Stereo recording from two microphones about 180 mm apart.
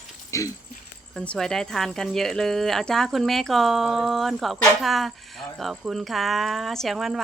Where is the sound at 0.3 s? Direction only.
15° left (ahead or behind).